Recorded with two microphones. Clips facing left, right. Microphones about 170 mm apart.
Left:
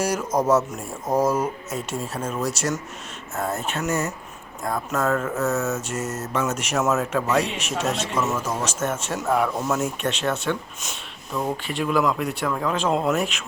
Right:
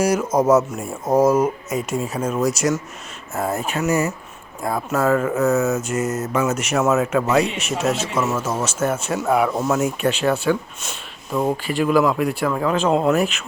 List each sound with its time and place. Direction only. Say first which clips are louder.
0.0 s mantra: right 5 dB; 10° right (ahead or behind)
11.6 s speech: right 4 dB; centre (ahead or behind)